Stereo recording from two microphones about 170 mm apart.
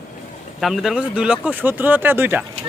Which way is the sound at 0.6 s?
Centre (ahead or behind).